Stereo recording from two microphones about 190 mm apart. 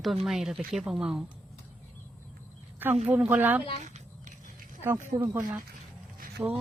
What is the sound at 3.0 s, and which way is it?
Speech, 10° right (ahead or behind).